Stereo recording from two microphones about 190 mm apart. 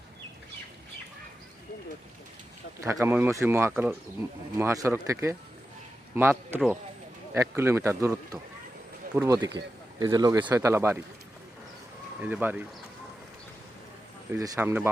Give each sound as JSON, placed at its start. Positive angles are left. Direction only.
{"t": 2.8, "sound": "speech", "side_deg": -15}
{"t": 12.2, "sound": "speech", "side_deg": -10}
{"t": 14.3, "sound": "speech", "side_deg": -20}